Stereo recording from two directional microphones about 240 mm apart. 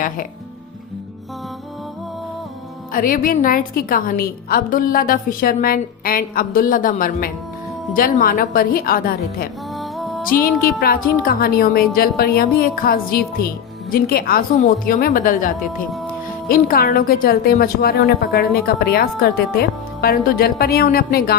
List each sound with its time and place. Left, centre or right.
2.9 s a woman's voice: left
9.7 s music: centre
10.4 s a woman's voice: left